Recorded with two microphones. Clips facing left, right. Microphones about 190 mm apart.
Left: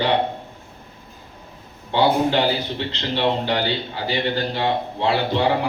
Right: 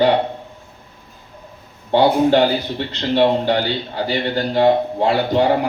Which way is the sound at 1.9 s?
50° right (ahead or behind).